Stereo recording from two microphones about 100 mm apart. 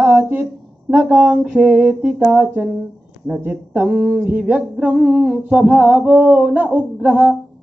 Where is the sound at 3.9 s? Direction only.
10° right (ahead or behind).